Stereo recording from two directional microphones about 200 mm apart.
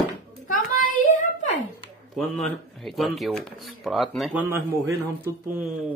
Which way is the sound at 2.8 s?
Centre (ahead or behind).